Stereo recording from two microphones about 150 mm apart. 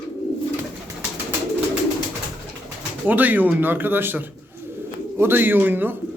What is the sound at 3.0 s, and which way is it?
Speech, 10° right (ahead or behind).